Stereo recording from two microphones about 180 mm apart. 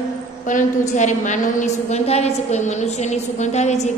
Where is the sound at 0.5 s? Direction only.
45° left (ahead or behind).